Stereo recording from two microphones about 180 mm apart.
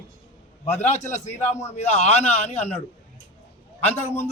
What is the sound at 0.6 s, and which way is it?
A man's voice, 40° left (ahead or behind).